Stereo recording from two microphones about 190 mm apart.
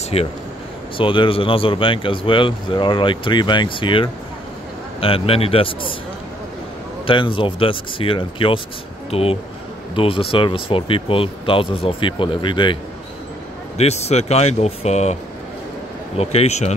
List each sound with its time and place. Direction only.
0.1 s speech: 30° left (ahead or behind)
7.1 s speech: 25° left (ahead or behind)
13.7 s speech: 35° left (ahead or behind)
16.2 s speech: 35° left (ahead or behind)